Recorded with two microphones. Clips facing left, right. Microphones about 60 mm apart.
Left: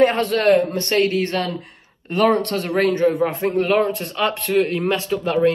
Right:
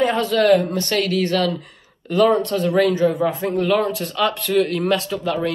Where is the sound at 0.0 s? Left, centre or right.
Left.